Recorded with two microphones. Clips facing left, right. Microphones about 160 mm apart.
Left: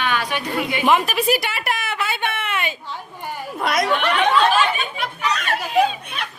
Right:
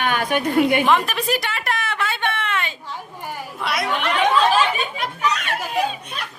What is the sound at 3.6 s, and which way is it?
Speech, 45° left (ahead or behind).